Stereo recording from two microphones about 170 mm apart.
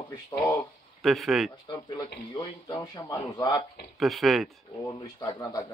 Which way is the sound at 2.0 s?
25° left (ahead or behind).